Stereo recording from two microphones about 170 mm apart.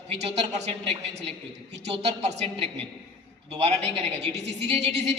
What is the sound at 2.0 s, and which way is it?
A man's voice, 40° right (ahead or behind).